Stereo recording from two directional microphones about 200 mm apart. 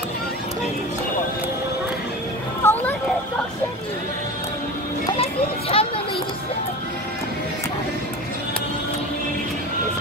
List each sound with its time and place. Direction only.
2.6 s children playing: 10° left (ahead or behind)
5.1 s children playing: 30° left (ahead or behind)